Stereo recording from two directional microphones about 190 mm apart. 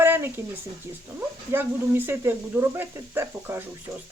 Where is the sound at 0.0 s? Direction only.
10° right (ahead or behind).